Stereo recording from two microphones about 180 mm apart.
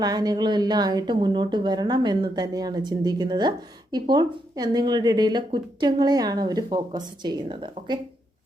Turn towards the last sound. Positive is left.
turn(degrees=-25)  # may be behind; listen again after turning